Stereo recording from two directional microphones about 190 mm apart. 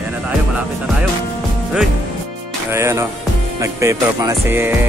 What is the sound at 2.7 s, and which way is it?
Music, 15° right (ahead or behind).